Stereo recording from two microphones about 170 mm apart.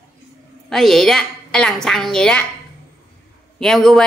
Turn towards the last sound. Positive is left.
turn(degrees=5)  # may be behind; listen again after turning